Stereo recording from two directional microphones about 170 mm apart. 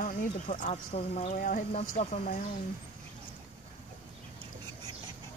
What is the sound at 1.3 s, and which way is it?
Speech, 55° left (ahead or behind).